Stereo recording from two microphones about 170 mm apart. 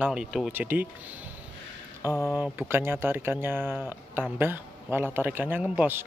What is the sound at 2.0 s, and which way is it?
Speech, 20° left (ahead or behind).